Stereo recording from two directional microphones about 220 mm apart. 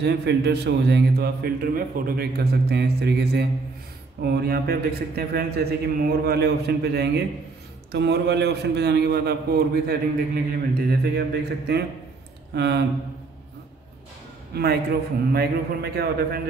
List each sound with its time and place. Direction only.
0.0 s a man's voice: 50° right (ahead or behind)
14.5 s a man's voice: 45° right (ahead or behind)